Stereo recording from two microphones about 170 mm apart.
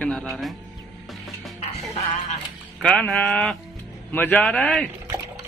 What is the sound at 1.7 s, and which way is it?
Speech, 40° left (ahead or behind).